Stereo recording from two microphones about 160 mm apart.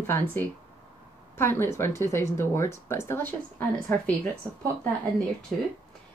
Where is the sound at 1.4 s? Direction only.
15° left (ahead or behind).